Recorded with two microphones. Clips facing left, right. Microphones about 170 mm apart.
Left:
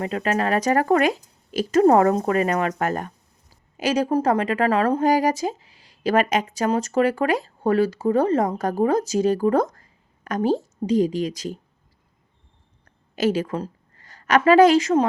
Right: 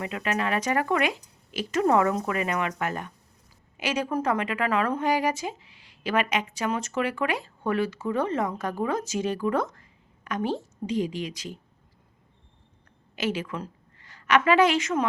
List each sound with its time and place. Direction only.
0.0 s a woman's voice: 35° left (ahead or behind)
13.1 s a woman's voice: 40° left (ahead or behind)